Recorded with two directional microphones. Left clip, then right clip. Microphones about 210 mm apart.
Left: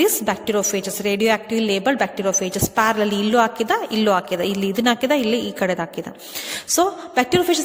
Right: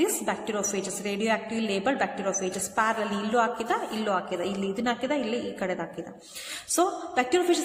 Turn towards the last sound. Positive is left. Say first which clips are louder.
# left 6 dB
turn(degrees=35)  # may be behind; listen again after turning